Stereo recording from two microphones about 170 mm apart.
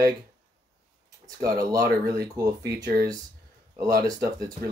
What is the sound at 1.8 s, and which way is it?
Speech, 70° right (ahead or behind).